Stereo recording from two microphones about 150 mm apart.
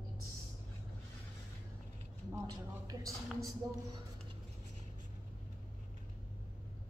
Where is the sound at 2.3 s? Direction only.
25° right (ahead or behind).